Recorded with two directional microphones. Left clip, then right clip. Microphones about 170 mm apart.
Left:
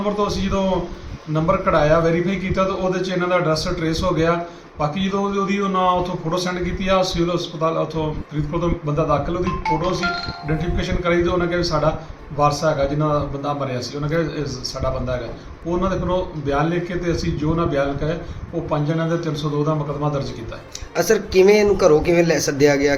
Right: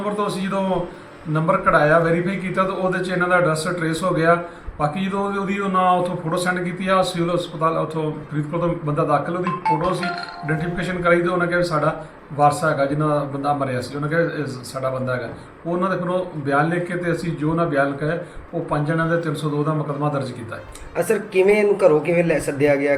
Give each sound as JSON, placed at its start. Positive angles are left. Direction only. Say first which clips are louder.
{"t": 0.0, "sound": "a man's voice", "louder": "left 2 dB", "side_deg": 0}
{"t": 15.8, "sound": "a man's voice", "louder": "even", "side_deg": 0}
{"t": 20.9, "sound": "speech", "louder": "left 3 dB", "side_deg": 40}